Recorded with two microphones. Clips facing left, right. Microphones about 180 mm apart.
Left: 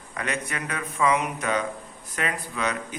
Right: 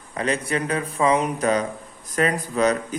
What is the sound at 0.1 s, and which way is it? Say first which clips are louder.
Speech: right 7 dB; 30° right (ahead or behind).